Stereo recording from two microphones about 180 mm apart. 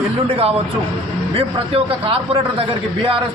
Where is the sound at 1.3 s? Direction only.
30° right (ahead or behind).